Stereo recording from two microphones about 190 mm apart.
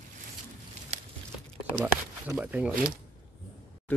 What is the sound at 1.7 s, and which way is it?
Speech, 10° right (ahead or behind).